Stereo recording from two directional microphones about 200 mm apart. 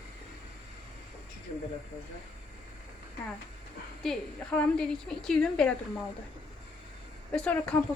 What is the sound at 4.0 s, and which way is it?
A woman's voice, 5° left (ahead or behind).